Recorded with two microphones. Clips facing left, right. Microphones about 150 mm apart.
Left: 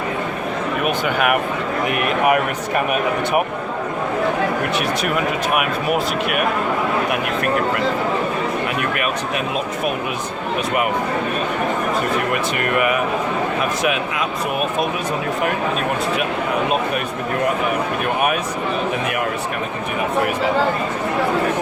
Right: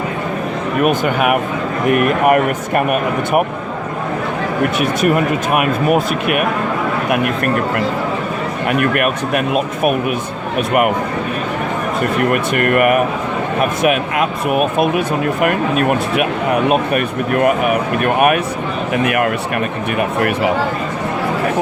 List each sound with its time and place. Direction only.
1.9 s speech: 50° right (ahead or behind)
5.1 s speech: 50° right (ahead or behind)
8.6 s speech: 55° right (ahead or behind)
12.3 s speech: 55° right (ahead or behind)
18.0 s speech: 60° right (ahead or behind)